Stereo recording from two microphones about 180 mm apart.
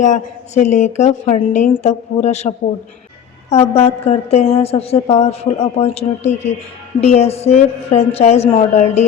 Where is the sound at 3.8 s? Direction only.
35° left (ahead or behind).